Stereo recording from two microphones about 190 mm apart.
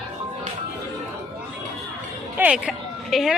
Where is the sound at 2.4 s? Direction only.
5° right (ahead or behind).